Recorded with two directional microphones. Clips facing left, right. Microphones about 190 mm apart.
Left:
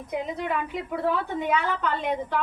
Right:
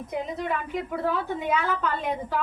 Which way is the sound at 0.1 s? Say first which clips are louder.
Left 1 dB; centre (ahead or behind).